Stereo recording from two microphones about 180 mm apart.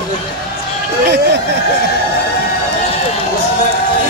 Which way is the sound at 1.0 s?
70° right (ahead or behind).